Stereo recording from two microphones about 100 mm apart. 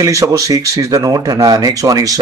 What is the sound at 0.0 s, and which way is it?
Speech, 35° right (ahead or behind).